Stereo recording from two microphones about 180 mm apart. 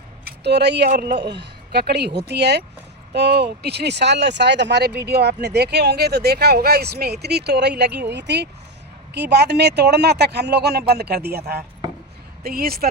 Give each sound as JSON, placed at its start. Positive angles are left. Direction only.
{"t": 0.3, "sound": "speech", "side_deg": -65}